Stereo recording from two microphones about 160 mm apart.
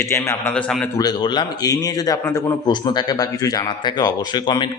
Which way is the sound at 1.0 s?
25° left (ahead or behind).